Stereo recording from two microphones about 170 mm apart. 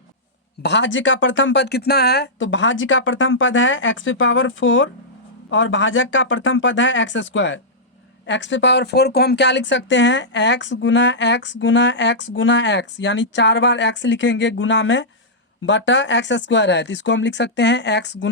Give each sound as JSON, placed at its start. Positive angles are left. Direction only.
{"t": 0.6, "sound": "speech", "side_deg": 90}